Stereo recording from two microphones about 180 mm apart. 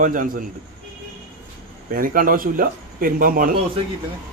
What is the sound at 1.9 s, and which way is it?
Speech, 50° right (ahead or behind).